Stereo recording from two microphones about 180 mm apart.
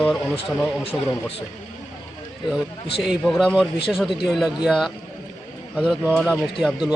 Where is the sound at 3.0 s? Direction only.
Centre (ahead or behind).